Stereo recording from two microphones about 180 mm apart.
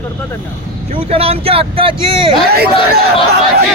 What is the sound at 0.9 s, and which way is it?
Speech, 30° right (ahead or behind).